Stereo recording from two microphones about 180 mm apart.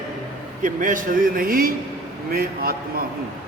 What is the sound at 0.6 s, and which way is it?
A man's voice, 45° right (ahead or behind).